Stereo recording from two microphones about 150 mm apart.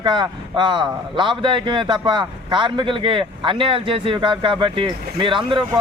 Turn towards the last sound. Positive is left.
turn(degrees=-35)  # may be behind; listen again after turning